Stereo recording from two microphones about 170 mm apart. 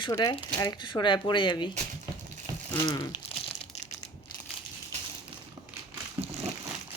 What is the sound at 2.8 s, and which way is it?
Speech, 25° left (ahead or behind).